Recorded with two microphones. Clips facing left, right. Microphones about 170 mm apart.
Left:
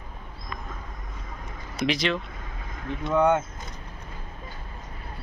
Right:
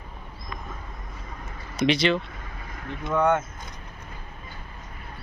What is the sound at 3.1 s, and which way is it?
Speech, 10° left (ahead or behind).